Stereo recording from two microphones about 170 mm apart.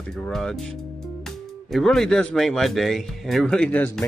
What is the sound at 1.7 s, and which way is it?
Speech, 5° left (ahead or behind).